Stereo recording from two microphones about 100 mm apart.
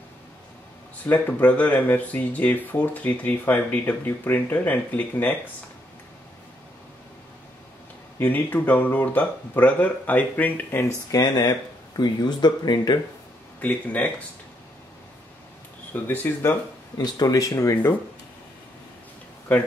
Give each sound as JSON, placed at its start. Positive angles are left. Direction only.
{"t": 1.0, "sound": "speech", "side_deg": 15}
{"t": 8.2, "sound": "speech", "side_deg": 15}
{"t": 11.1, "sound": "speech", "side_deg": 40}
{"t": 13.6, "sound": "speech", "side_deg": 15}
{"t": 15.9, "sound": "speech", "side_deg": 20}
{"t": 17.0, "sound": "speech", "side_deg": 40}